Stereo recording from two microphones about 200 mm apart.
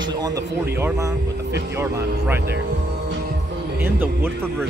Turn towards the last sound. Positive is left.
turn(degrees=-10)  # may be behind; listen again after turning